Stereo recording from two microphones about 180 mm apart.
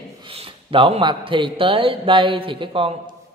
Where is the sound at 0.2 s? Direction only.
30° right (ahead or behind).